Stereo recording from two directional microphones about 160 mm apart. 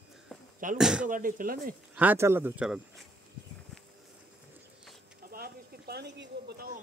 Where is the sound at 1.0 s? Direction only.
60° right (ahead or behind).